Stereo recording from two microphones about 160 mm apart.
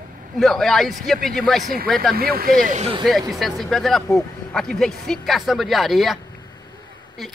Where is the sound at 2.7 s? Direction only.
45° right (ahead or behind).